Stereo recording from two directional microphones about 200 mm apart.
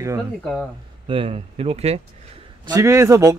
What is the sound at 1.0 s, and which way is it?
Speech, 25° right (ahead or behind).